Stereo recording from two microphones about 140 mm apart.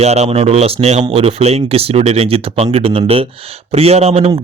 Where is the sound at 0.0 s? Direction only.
50° right (ahead or behind).